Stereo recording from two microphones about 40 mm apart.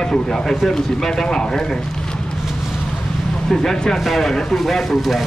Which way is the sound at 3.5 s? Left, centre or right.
Centre.